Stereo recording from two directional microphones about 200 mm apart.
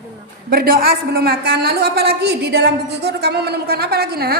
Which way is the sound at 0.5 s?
45° right (ahead or behind).